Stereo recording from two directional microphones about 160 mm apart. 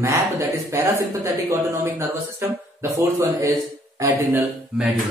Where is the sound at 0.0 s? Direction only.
20° right (ahead or behind).